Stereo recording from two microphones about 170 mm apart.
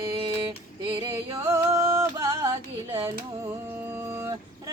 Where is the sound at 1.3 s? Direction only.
20° right (ahead or behind).